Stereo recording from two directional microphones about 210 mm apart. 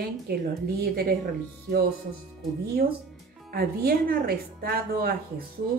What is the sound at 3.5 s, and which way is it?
A woman's voice, 45° right (ahead or behind).